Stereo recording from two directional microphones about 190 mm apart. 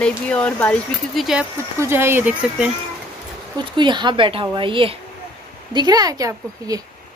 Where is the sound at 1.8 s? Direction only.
10° right (ahead or behind).